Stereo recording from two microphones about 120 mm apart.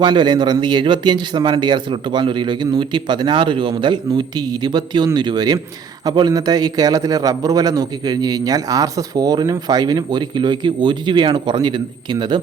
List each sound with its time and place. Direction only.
0.0 s a man's voice: 40° right (ahead or behind)